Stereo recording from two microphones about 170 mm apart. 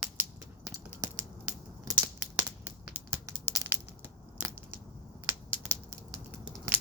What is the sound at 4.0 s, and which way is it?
Scissors, 10° right (ahead or behind).